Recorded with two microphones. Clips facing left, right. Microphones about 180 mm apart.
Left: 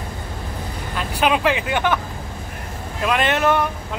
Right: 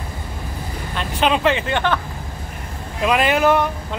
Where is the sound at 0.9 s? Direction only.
5° left (ahead or behind).